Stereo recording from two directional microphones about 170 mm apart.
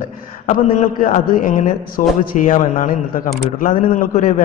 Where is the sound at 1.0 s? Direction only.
50° left (ahead or behind).